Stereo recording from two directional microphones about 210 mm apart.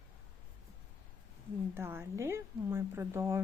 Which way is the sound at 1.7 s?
10° right (ahead or behind).